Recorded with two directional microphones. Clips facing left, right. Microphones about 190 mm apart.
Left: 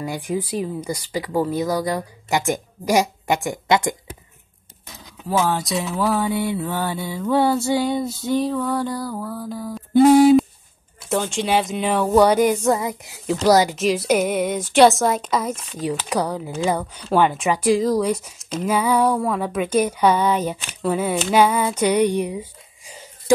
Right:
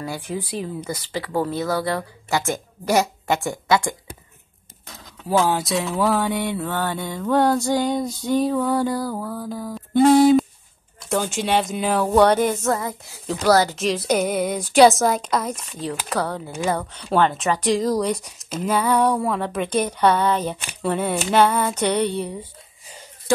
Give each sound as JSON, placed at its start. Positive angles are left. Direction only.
{"t": 0.0, "sound": "speech", "side_deg": 15}
{"t": 0.3, "sound": "mantra", "side_deg": 0}
{"t": 1.1, "sound": "speech", "side_deg": 10}
{"t": 5.4, "sound": "mantra", "side_deg": 0}
{"t": 10.0, "sound": "speech", "side_deg": 10}
{"t": 11.0, "sound": "mantra", "side_deg": 0}
{"t": 12.6, "sound": "speech", "side_deg": 15}
{"t": 13.7, "sound": "mantra", "side_deg": 5}
{"t": 16.1, "sound": "speech", "side_deg": 10}